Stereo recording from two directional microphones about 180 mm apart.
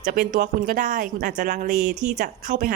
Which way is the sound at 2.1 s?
45° right (ahead or behind).